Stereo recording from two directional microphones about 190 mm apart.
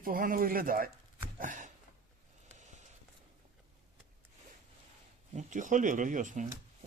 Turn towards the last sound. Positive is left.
turn(degrees=-40)  # may be behind; listen again after turning